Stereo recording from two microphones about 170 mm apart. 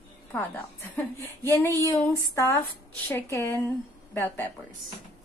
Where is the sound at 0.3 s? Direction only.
15° left (ahead or behind).